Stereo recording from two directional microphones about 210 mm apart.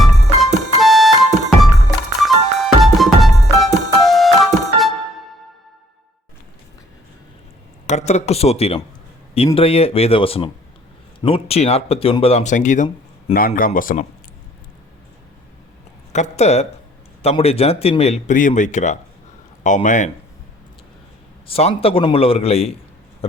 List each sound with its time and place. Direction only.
0.8 s music: centre (ahead or behind)
7.9 s a woman's voice: 30° left (ahead or behind)
16.1 s a woman's voice: 35° left (ahead or behind)
21.4 s speech: 30° left (ahead or behind)